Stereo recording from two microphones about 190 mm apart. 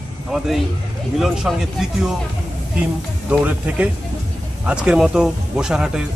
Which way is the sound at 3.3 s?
10° right (ahead or behind).